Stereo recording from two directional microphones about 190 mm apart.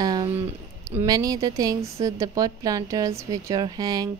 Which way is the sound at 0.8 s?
20° right (ahead or behind).